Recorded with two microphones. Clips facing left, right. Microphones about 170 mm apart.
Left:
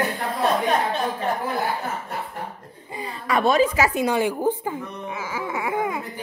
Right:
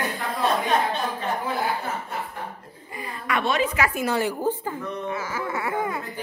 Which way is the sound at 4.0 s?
15° left (ahead or behind).